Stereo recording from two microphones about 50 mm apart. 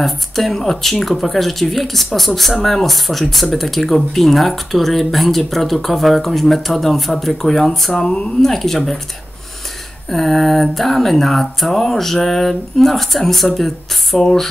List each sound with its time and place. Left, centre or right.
0.0 s speech: centre
7.9 s speech: centre
10.0 s speech: centre